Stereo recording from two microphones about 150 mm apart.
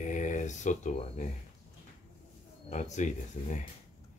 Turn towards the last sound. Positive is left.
turn(degrees=45)  # may be behind; listen again after turning